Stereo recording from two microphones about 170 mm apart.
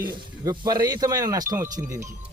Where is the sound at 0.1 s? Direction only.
25° right (ahead or behind).